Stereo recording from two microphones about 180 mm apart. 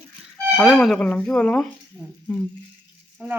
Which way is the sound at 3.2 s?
10° right (ahead or behind).